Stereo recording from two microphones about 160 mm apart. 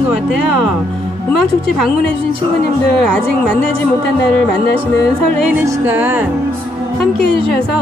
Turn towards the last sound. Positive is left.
turn(degrees=-15)  # may be behind; listen again after turning